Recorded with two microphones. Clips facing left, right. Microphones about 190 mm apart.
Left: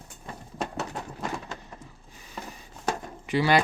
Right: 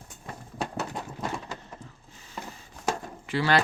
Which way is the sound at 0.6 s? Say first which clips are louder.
Even; centre (ahead or behind).